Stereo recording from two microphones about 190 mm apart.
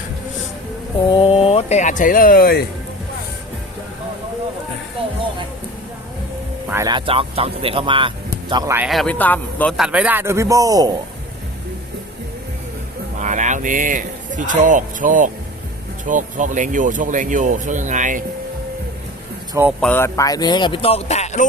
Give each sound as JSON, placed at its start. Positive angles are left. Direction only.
{"t": 1.1, "sound": "speech", "side_deg": 30}
{"t": 6.7, "sound": "speech", "side_deg": -15}
{"t": 6.9, "sound": "speech", "side_deg": -30}
{"t": 8.7, "sound": "speech", "side_deg": -5}
{"t": 9.7, "sound": "speech", "side_deg": -5}
{"t": 13.1, "sound": "speech", "side_deg": -40}
{"t": 19.8, "sound": "speech", "side_deg": 10}